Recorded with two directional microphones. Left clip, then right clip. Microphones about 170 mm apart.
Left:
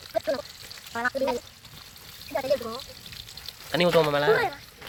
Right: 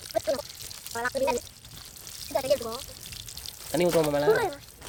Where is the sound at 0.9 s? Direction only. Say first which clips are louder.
Left 3 dB; 35° left (ahead or behind).